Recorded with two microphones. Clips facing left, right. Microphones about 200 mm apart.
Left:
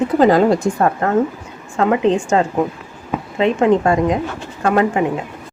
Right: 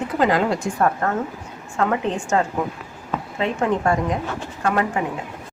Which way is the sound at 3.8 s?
90° left.